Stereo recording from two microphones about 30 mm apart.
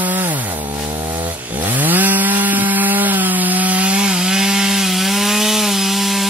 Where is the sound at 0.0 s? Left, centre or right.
Right.